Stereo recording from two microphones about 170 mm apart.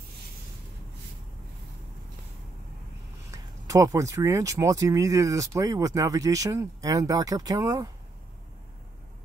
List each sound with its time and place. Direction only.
3.3 s speech: 20° right (ahead or behind)